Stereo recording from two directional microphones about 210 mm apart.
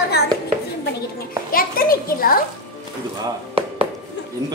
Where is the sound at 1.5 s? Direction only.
45° left (ahead or behind).